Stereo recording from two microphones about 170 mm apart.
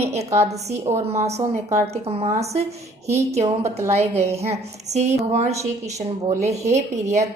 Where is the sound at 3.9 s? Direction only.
40° right (ahead or behind).